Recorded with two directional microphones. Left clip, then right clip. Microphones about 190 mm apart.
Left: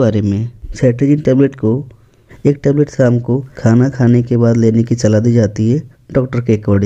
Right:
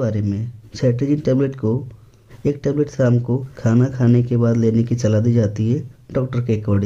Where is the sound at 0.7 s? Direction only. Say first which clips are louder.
Left 6 dB; 25° left (ahead or behind).